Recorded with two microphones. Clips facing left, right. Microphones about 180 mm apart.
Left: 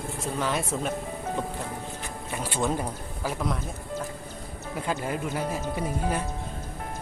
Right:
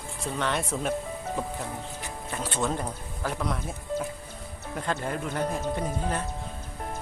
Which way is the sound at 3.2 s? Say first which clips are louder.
Left 1 dB; 5° left (ahead or behind).